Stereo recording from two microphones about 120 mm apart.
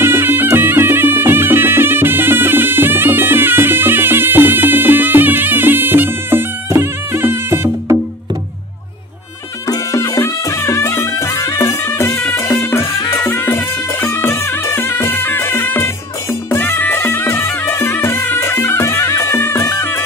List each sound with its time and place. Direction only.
0.0 s music: 20° right (ahead or behind)
9.7 s music: 30° left (ahead or behind)